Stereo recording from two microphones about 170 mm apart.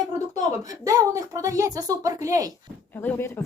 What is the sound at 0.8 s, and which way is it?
A child's voice, 20° right (ahead or behind).